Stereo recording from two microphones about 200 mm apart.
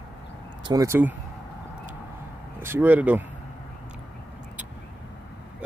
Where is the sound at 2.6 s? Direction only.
10° right (ahead or behind).